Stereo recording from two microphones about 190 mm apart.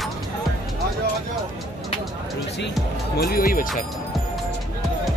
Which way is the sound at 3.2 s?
50° left (ahead or behind).